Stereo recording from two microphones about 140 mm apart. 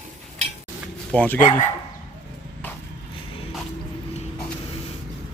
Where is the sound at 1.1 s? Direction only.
10° left (ahead or behind).